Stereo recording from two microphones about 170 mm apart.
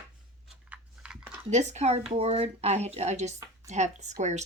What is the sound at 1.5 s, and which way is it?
Speech, 40° right (ahead or behind).